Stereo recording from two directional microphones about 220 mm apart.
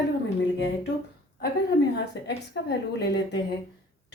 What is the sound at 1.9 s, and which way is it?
Speech, 50° left (ahead or behind).